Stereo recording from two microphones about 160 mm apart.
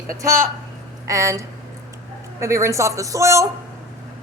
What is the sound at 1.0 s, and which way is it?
Speech, 20° right (ahead or behind).